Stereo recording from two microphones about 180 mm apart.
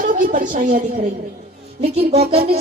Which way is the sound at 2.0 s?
35° right (ahead or behind).